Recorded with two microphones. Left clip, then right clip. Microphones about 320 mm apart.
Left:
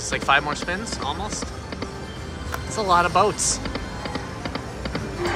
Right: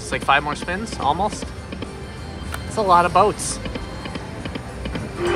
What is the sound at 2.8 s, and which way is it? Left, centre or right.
Speech, centre.